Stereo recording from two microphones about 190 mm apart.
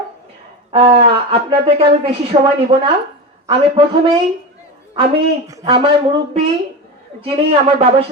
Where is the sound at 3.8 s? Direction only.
25° right (ahead or behind).